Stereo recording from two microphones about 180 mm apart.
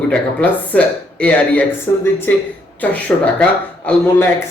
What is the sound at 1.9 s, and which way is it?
Speech, 20° left (ahead or behind).